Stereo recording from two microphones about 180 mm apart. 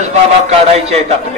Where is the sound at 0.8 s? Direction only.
35° right (ahead or behind).